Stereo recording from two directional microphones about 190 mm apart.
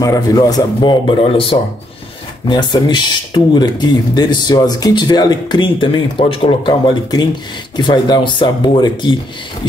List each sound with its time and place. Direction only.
0.0 s speech: 20° left (ahead or behind)